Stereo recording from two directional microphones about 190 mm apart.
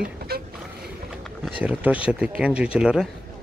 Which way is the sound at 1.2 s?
5° right (ahead or behind).